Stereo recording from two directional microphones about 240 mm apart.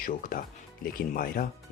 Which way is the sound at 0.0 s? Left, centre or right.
Left.